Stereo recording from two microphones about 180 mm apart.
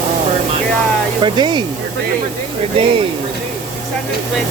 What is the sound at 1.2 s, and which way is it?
Speech, 25° right (ahead or behind).